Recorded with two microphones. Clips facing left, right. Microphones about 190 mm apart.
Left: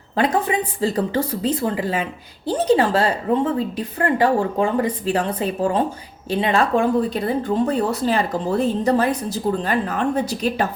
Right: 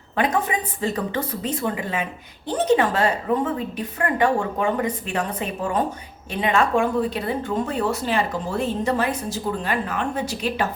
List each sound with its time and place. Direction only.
0.2 s speech: 30° left (ahead or behind)